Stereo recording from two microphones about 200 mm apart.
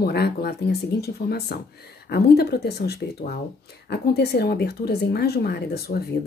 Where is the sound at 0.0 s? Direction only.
50° left (ahead or behind).